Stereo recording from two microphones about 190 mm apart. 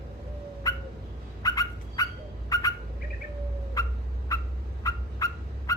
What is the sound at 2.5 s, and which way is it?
Bird, 20° left (ahead or behind).